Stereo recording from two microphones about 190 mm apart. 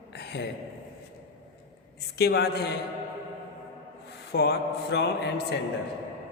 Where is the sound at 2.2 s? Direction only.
60° left (ahead or behind).